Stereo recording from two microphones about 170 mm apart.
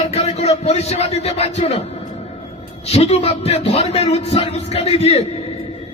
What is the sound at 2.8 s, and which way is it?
A man's voice, 40° left (ahead or behind).